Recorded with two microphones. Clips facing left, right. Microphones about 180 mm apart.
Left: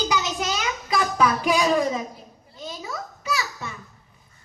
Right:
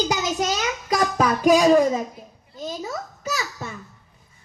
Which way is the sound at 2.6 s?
40° right (ahead or behind).